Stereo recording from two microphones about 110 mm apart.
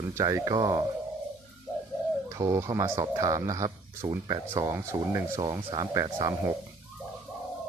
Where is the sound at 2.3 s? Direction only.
30° right (ahead or behind).